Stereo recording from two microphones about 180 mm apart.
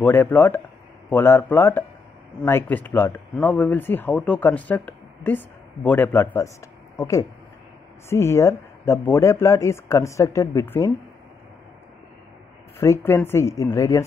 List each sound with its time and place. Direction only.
0.0 s speech: 10° left (ahead or behind)
12.7 s speech: 15° left (ahead or behind)